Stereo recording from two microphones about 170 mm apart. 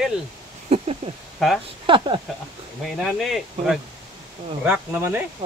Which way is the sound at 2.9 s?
Centre (ahead or behind).